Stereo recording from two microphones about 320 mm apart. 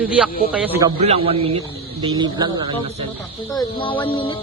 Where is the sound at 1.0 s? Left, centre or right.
Centre.